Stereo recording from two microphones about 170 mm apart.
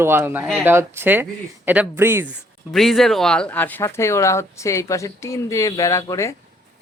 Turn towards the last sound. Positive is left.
turn(degrees=15)  # may be behind; listen again after turning